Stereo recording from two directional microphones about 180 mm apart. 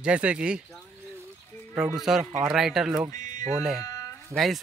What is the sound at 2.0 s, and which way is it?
Speech, centre (ahead or behind).